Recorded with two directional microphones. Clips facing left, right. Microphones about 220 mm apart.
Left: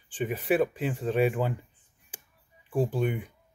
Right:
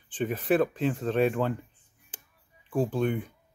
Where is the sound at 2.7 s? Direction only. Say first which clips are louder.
Right 1 dB; 10° left (ahead or behind).